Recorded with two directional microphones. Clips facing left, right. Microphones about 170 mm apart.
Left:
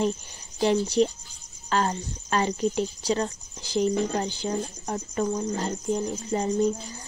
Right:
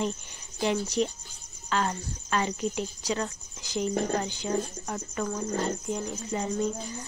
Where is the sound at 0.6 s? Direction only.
30° left (ahead or behind).